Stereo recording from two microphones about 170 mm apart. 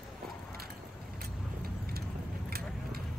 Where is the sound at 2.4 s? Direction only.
60° right (ahead or behind).